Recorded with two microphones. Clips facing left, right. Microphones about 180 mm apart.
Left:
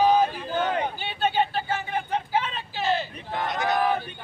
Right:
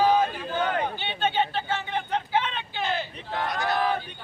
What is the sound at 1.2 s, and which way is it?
Vehicle, 40° left (ahead or behind).